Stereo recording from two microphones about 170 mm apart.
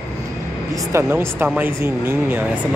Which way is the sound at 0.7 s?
20° right (ahead or behind).